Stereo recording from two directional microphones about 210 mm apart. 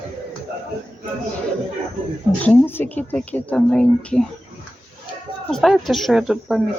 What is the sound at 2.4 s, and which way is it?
Speech, 10° left (ahead or behind).